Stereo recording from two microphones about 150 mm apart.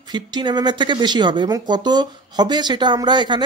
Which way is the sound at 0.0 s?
30° right (ahead or behind).